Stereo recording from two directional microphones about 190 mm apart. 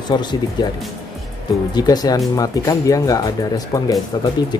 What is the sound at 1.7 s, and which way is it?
Speech, 20° left (ahead or behind).